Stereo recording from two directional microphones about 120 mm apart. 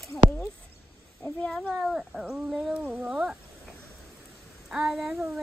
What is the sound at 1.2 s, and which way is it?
Child singing, 10° left (ahead or behind).